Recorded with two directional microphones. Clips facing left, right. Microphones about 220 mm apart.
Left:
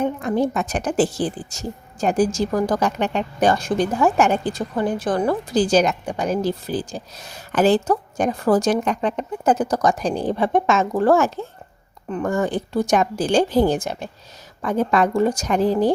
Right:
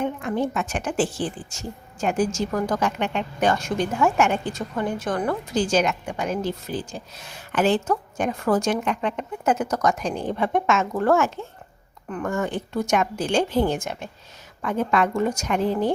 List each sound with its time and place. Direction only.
0.0 s a woman's voice: 35° left (ahead or behind)